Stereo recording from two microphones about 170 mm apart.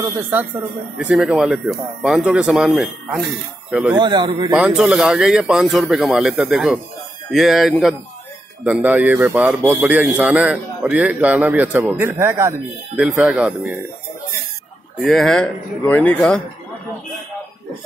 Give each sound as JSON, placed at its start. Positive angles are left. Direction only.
{"t": 0.9, "sound": "speech", "side_deg": -5}
{"t": 3.9, "sound": "a man's voice", "side_deg": -25}
{"t": 4.6, "sound": "a man's voice", "side_deg": -5}
{"t": 15.0, "sound": "speech", "side_deg": 0}